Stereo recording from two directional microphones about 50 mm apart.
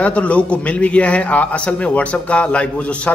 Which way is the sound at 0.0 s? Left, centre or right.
Left.